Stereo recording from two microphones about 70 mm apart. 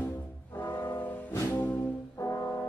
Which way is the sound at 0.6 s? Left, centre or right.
Left.